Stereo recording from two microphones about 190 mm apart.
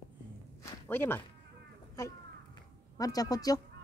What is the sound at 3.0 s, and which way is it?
Speech, 20° left (ahead or behind).